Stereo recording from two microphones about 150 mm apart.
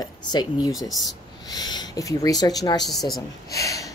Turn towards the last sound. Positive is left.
turn(degrees=20)  # may be behind; listen again after turning